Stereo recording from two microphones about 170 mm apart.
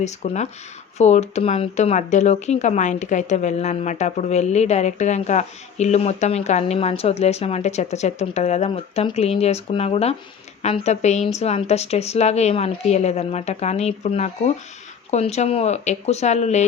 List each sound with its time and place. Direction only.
0.0 s speech: 40° left (ahead or behind)